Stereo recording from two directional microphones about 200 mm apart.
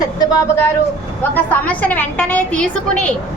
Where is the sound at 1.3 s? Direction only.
5° left (ahead or behind).